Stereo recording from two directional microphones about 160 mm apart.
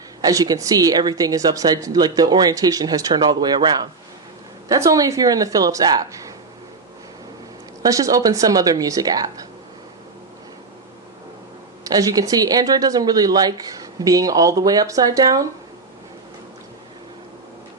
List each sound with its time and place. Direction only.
0.2 s speech: 25° right (ahead or behind)
7.8 s speech: 20° right (ahead or behind)
11.8 s speech: 25° right (ahead or behind)